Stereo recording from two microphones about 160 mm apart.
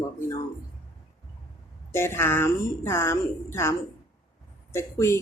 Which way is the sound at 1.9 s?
15° left (ahead or behind).